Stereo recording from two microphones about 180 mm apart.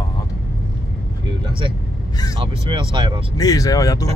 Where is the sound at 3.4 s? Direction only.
20° left (ahead or behind).